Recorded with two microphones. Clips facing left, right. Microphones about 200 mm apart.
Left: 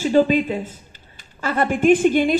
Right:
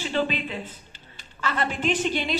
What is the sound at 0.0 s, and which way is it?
A woman's voice, 45° left (ahead or behind).